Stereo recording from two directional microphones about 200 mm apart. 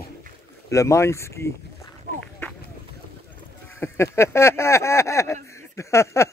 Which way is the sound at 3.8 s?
15° left (ahead or behind).